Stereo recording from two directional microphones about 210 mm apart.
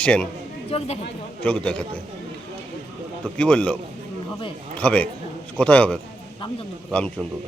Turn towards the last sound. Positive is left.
turn(degrees=5)  # may be behind; listen again after turning